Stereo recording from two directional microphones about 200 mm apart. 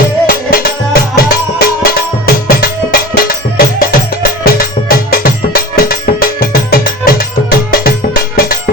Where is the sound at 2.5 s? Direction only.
45° left (ahead or behind).